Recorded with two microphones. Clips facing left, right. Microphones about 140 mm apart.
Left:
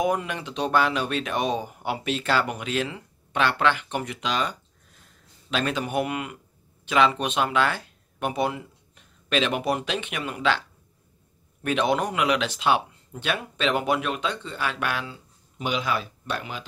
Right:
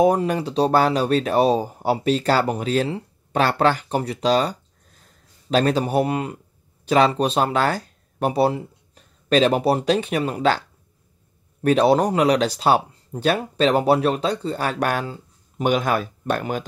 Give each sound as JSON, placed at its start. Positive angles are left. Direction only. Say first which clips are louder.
{"t": 0.0, "sound": "speech", "louder": "right 8 dB", "side_deg": -35}
{"t": 11.6, "sound": "speech", "louder": "right 7 dB", "side_deg": -35}